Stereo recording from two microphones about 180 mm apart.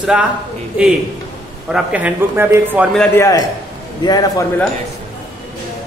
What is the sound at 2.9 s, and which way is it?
Speech, 5° left (ahead or behind).